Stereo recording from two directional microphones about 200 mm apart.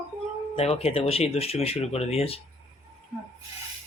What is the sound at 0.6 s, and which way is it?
Speech, 30° left (ahead or behind).